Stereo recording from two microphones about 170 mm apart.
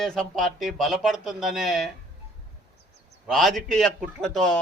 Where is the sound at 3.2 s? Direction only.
Centre (ahead or behind).